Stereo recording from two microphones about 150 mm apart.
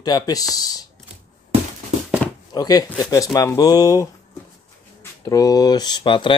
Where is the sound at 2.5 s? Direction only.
25° left (ahead or behind).